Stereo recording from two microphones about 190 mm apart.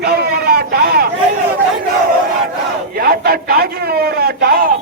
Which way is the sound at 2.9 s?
55° right (ahead or behind).